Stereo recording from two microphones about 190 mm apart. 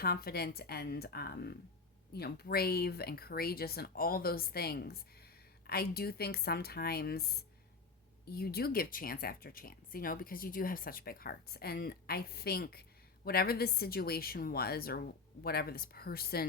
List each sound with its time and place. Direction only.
0.0 s speech: 55° left (ahead or behind)